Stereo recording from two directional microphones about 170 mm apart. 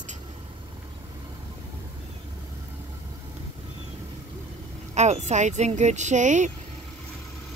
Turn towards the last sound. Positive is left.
turn(degrees=-45)  # may be behind; listen again after turning